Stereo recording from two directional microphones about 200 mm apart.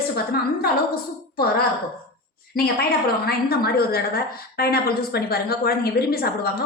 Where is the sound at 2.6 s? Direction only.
50° left (ahead or behind).